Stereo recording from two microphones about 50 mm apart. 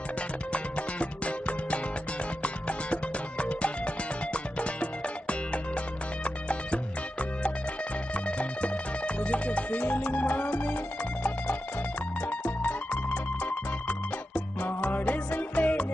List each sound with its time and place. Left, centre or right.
0.5 s music: left
12.3 s music: left